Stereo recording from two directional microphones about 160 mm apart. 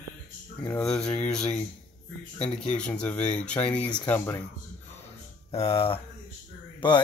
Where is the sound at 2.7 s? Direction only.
5° left (ahead or behind).